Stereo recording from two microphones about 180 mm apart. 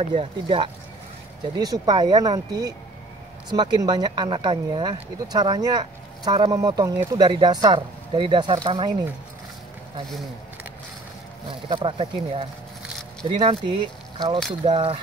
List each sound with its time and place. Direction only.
0.0 s speech: 30° right (ahead or behind)
11.4 s speech: 25° right (ahead or behind)